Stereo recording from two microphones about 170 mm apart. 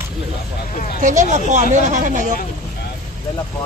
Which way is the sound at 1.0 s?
45° right (ahead or behind).